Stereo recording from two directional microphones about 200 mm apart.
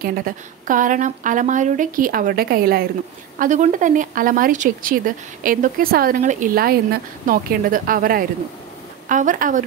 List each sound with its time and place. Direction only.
0.0 s a woman's voice: 45° right (ahead or behind)